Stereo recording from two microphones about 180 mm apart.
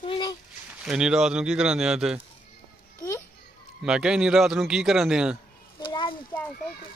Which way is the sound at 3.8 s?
5° right (ahead or behind).